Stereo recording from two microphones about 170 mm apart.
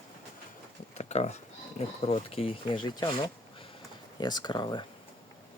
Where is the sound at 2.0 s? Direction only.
35° left (ahead or behind).